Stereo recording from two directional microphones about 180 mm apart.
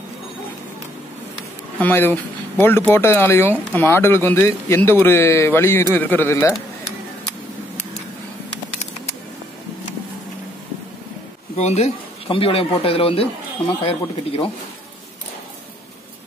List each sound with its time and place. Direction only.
1.8 s speech: 10° left (ahead or behind)
11.5 s speech: 40° left (ahead or behind)